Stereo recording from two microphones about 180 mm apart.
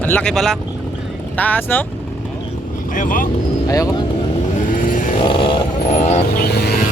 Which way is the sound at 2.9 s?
50° left (ahead or behind).